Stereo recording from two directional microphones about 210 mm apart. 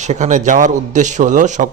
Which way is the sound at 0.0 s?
35° right (ahead or behind).